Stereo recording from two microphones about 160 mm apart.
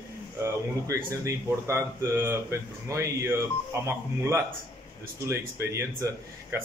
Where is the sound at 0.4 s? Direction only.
20° right (ahead or behind).